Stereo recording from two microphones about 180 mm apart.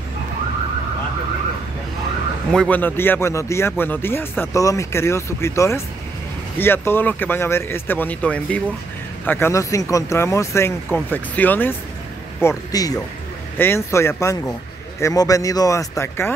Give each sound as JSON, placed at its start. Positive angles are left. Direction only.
{"t": 2.5, "sound": "speech", "side_deg": 5}